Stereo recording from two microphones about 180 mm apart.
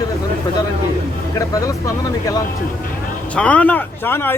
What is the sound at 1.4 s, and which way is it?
Speech, 20° left (ahead or behind).